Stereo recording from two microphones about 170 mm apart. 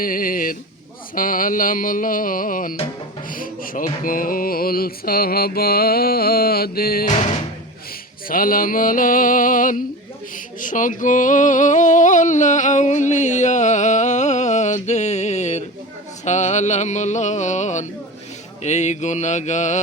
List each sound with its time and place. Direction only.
0.0 s speech: 55° left (ahead or behind)
1.1 s singing: 55° left (ahead or behind)
3.3 s mantra: 55° left (ahead or behind)
8.3 s mantra: 55° left (ahead or behind)
10.6 s singing: 50° left (ahead or behind)